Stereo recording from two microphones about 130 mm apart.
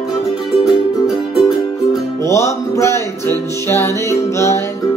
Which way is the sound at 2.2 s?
20° left (ahead or behind).